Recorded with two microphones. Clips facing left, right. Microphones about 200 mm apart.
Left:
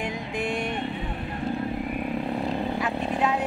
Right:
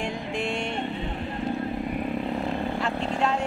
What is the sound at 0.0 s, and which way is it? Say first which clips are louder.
Music: even; 20° left (ahead or behind).